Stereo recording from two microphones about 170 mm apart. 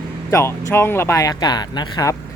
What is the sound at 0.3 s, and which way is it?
Speech, 15° left (ahead or behind).